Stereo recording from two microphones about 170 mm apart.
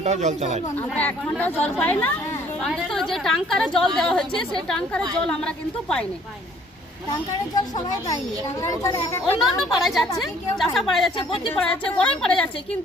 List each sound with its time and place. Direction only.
0.0 s speech: 45° right (ahead or behind)
0.8 s a woman's voice: 10° left (ahead or behind)
8.6 s speech: 15° left (ahead or behind)
9.4 s a woman's voice: centre (ahead or behind)